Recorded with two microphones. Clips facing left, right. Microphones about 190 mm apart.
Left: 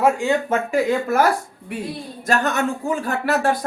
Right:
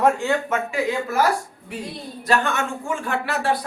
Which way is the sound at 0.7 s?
50° left (ahead or behind).